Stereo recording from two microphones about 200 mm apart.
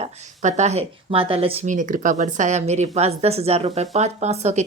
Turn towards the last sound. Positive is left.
turn(degrees=-35)  # may be behind; listen again after turning